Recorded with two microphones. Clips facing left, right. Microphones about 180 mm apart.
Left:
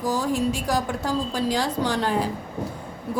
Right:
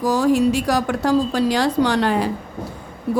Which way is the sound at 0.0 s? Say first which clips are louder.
Right 7 dB; 70° right (ahead or behind).